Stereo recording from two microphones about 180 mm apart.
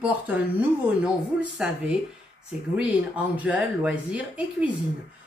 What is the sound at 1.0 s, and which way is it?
Speech, 5° right (ahead or behind).